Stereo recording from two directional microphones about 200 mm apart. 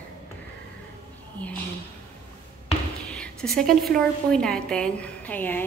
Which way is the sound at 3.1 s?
5° left (ahead or behind).